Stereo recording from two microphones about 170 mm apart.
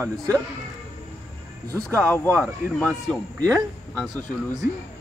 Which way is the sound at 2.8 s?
5° left (ahead or behind).